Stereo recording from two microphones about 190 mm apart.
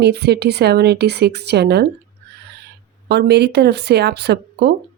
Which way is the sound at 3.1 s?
60° right (ahead or behind).